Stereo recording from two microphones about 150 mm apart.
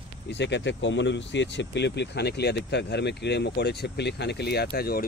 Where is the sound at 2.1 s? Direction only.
90° left.